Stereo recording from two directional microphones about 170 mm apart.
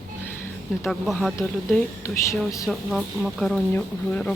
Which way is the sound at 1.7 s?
15° left (ahead or behind).